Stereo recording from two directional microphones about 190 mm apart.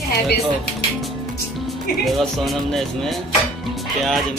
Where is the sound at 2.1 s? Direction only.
Centre (ahead or behind).